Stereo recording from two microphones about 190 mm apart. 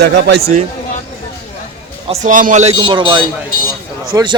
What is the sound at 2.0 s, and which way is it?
Speech, 35° right (ahead or behind).